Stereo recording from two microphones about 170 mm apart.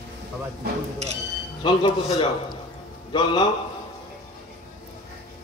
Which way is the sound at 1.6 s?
30° left (ahead or behind).